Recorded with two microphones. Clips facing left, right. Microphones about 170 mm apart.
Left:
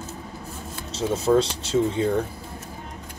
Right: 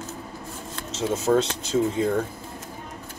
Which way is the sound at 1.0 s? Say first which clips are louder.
Left 1 dB; 30° left (ahead or behind).